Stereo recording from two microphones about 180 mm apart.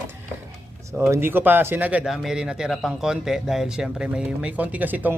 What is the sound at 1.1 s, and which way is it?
Speech, 10° right (ahead or behind).